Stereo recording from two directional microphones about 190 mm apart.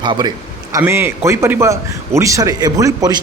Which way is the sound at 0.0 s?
25° right (ahead or behind).